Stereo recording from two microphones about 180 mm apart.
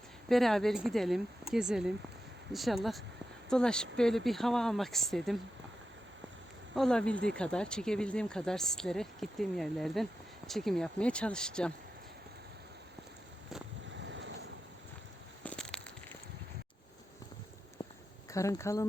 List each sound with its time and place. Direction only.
0.3 s speech: centre (ahead or behind)
6.7 s speech: 5° left (ahead or behind)
13.9 s vehicle: 90° right
15.4 s a sound: 5° left (ahead or behind)
18.3 s speech: 15° left (ahead or behind)